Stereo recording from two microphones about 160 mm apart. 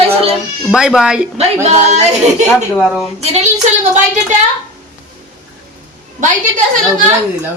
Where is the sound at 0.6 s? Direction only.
Centre (ahead or behind).